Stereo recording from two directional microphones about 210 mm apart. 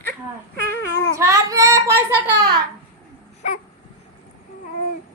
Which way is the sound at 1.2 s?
15° right (ahead or behind).